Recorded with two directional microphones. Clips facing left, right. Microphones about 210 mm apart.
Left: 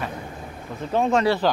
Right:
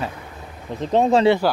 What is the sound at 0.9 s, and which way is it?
Speech, 30° right (ahead or behind).